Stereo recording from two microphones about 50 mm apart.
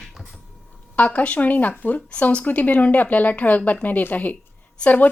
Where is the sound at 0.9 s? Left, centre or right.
Left.